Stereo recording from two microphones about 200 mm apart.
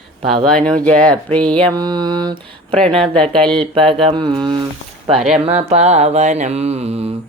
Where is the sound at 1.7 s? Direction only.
20° right (ahead or behind).